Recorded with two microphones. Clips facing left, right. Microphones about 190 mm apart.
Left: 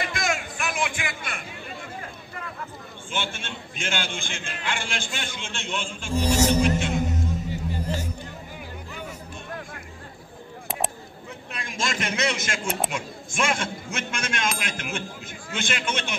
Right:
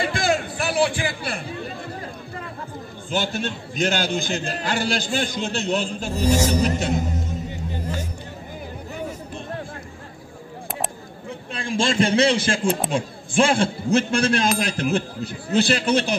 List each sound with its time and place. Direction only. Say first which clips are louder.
0.0 s a sound: right 6 dB; 30° right (ahead or behind)
3.1 s a man's voice: right 7 dB; 40° right (ahead or behind)
11.5 s a man's voice: right 9 dB; 30° right (ahead or behind)